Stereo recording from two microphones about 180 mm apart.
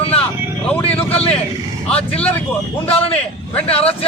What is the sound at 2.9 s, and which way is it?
Speech, 30° left (ahead or behind).